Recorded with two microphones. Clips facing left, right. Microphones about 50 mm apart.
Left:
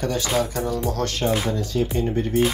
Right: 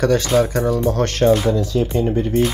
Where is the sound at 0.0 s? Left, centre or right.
Right.